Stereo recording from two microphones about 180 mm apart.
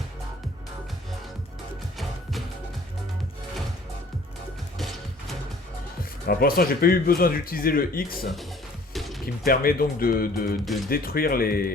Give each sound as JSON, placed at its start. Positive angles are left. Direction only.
{"t": 6.0, "sound": "speech", "side_deg": 55}
{"t": 8.9, "sound": "music", "side_deg": 0}
{"t": 9.2, "sound": "speech", "side_deg": 55}